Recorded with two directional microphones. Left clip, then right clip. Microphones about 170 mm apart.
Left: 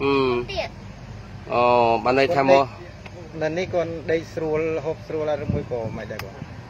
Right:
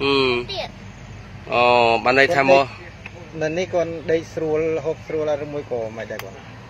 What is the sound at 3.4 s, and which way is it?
Speech, 50° right (ahead or behind).